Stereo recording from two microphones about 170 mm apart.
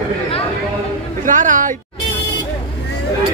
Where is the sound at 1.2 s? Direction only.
50° right (ahead or behind).